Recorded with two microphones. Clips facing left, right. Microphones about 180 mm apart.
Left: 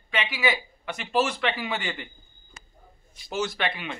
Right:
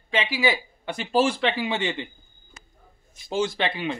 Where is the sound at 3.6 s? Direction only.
30° right (ahead or behind).